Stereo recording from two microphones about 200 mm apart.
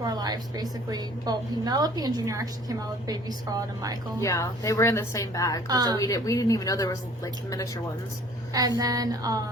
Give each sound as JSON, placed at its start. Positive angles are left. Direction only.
{"t": 0.0, "sound": "a woman's voice", "side_deg": -20}
{"t": 4.2, "sound": "a woman's voice", "side_deg": 15}
{"t": 5.6, "sound": "a woman's voice", "side_deg": -20}
{"t": 6.0, "sound": "a woman's voice", "side_deg": 15}
{"t": 8.8, "sound": "a woman's voice", "side_deg": -20}